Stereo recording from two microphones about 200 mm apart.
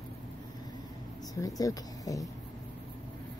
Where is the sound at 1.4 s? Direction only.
15° left (ahead or behind).